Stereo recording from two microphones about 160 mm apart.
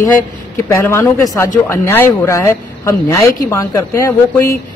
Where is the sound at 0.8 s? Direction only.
15° left (ahead or behind).